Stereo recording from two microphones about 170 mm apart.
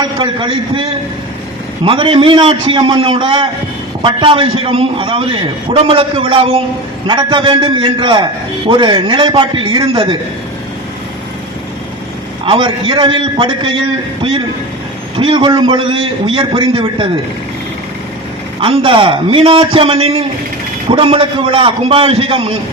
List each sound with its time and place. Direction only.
0.0 s a man's voice: 30° right (ahead or behind)
12.5 s a man's voice: 30° right (ahead or behind)
18.6 s a man's voice: 30° right (ahead or behind)